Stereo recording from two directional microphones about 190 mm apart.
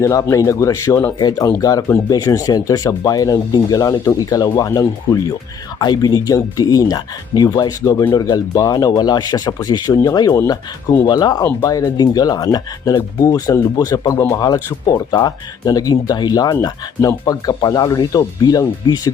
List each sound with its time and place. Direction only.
0.0 s speech: 15° left (ahead or behind)